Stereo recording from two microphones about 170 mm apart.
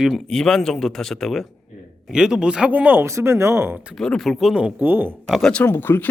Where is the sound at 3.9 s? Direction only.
5° left (ahead or behind).